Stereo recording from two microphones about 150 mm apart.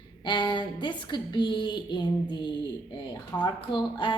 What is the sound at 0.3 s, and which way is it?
Speech, 30° left (ahead or behind).